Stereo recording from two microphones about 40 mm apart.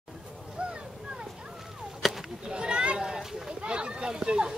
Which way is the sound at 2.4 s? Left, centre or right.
Right.